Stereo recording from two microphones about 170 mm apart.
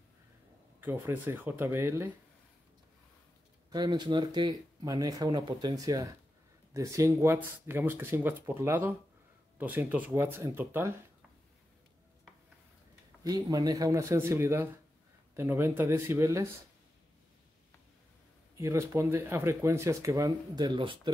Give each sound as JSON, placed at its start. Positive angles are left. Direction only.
{"t": 0.7, "sound": "speech", "side_deg": -10}
{"t": 3.7, "sound": "speech", "side_deg": -25}
{"t": 13.2, "sound": "speech", "side_deg": -20}
{"t": 18.6, "sound": "speech", "side_deg": -15}